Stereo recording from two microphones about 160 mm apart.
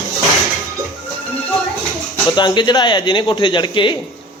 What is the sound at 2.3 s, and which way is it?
Speech, 30° left (ahead or behind).